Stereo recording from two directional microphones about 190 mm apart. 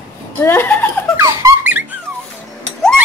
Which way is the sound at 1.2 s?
10° right (ahead or behind).